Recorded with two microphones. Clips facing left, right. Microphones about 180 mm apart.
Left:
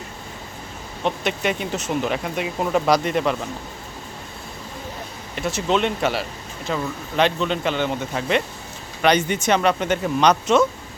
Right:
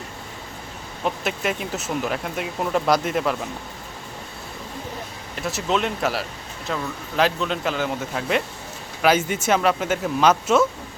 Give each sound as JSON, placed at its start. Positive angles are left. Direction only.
{"t": 1.0, "sound": "speech", "side_deg": 0}
{"t": 5.3, "sound": "speech", "side_deg": 0}